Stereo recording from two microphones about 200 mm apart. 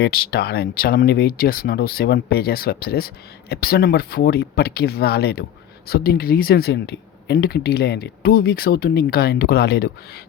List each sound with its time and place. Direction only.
0.0 s speech: 50° left (ahead or behind)